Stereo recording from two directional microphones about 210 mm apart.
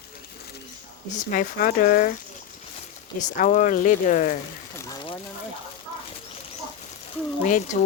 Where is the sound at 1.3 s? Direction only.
40° left (ahead or behind).